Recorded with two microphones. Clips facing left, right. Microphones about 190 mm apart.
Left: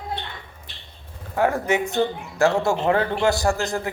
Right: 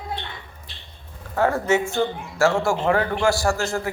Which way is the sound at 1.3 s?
15° left (ahead or behind).